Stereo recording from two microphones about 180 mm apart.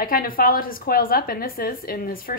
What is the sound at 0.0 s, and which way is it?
A woman's voice, 55° left (ahead or behind).